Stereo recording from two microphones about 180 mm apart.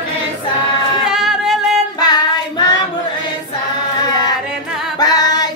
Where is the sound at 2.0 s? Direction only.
20° left (ahead or behind).